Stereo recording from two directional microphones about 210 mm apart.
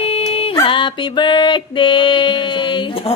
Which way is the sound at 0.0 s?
25° left (ahead or behind).